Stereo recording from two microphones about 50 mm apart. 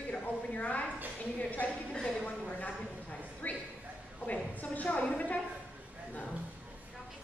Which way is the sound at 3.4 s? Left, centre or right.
Left.